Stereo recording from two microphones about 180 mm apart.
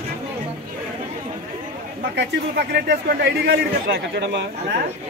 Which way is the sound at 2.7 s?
70° right (ahead or behind).